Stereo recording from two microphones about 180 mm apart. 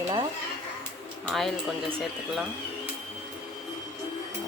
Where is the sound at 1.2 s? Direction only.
Centre (ahead or behind).